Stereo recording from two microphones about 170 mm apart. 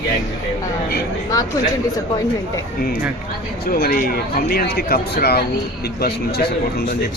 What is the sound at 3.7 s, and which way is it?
A man's voice, 60° left (ahead or behind).